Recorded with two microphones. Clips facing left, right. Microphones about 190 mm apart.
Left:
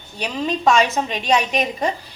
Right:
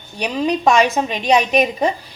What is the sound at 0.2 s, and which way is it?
A woman's voice, 15° right (ahead or behind).